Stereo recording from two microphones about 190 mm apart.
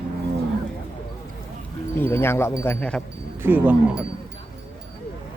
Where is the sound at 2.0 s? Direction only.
10° left (ahead or behind).